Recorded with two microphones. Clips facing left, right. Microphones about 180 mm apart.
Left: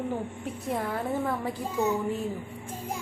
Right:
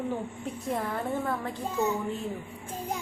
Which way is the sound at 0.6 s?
Centre (ahead or behind).